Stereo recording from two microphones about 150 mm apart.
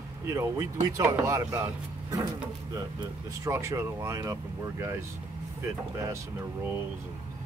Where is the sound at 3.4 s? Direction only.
20° right (ahead or behind).